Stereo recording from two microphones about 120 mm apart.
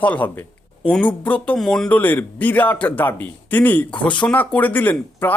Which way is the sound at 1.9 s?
15° left (ahead or behind).